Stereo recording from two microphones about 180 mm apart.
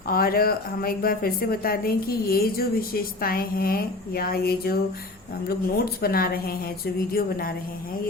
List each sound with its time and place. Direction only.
0.1 s a woman's voice: 55° left (ahead or behind)